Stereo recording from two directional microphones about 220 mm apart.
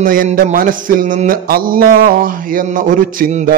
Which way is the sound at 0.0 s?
40° right (ahead or behind).